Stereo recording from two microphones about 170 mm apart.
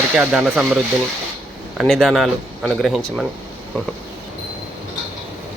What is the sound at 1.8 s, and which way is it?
Speech, centre (ahead or behind).